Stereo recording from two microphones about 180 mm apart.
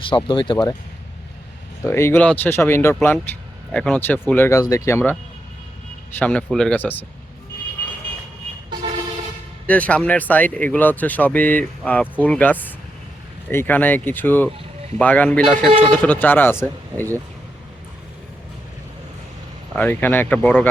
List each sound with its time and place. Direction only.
0.3 s speech: 25° left (ahead or behind)
1.8 s speech: 15° left (ahead or behind)
6.1 s speech: 5° left (ahead or behind)
9.6 s speech: 10° left (ahead or behind)
19.7 s speech: 10° left (ahead or behind)